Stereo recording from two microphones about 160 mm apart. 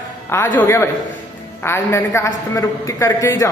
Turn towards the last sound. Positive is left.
turn(degrees=20)  # may be behind; listen again after turning